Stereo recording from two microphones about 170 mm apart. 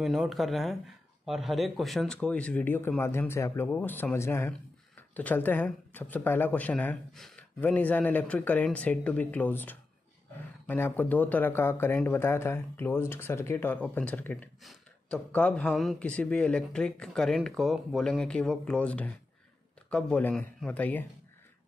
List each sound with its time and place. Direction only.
0.0 s speech: centre (ahead or behind)